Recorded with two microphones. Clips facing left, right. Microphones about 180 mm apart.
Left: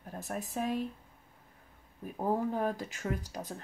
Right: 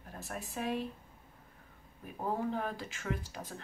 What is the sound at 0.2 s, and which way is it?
Speech, 45° left (ahead or behind).